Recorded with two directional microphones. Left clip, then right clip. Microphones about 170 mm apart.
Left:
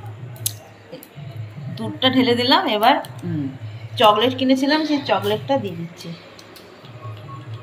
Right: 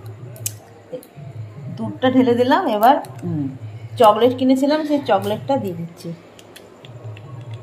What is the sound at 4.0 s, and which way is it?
A woman's voice, 50° right (ahead or behind).